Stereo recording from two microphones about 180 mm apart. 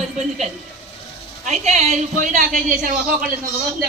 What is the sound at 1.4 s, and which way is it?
A woman's voice, 40° right (ahead or behind).